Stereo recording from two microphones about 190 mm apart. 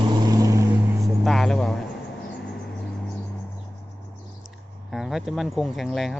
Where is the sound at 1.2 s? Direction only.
Centre (ahead or behind).